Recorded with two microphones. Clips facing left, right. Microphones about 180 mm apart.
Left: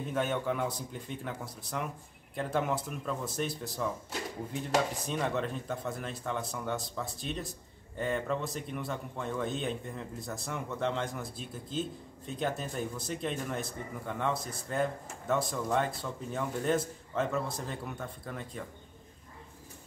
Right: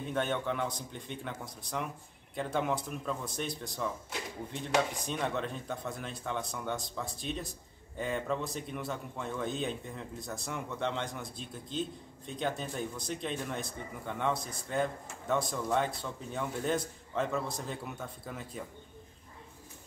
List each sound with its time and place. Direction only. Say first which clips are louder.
0.1 s speech: left 1 dB; 5° left (ahead or behind)